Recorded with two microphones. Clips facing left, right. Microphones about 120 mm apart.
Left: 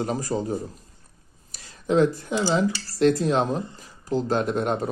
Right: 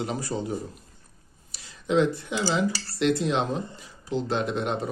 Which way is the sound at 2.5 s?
40° left (ahead or behind).